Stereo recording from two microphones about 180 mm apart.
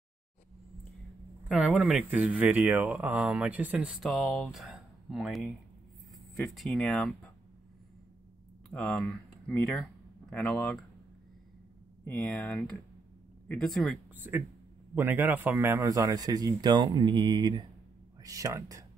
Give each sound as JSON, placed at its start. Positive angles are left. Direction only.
{"t": 1.5, "sound": "speech", "side_deg": -5}
{"t": 8.6, "sound": "speech", "side_deg": 5}
{"t": 12.0, "sound": "speech", "side_deg": 5}
{"t": 14.2, "sound": "a man's voice", "side_deg": -10}